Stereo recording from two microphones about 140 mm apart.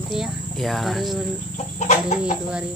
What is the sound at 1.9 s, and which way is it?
Speech, 60° left (ahead or behind).